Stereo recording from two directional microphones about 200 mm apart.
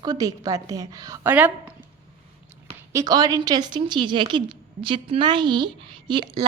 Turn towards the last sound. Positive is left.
turn(degrees=-25)  # may be behind; listen again after turning